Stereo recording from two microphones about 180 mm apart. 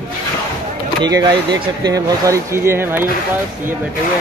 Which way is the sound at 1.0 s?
20° right (ahead or behind).